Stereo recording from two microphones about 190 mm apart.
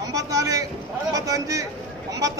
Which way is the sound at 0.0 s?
20° right (ahead or behind).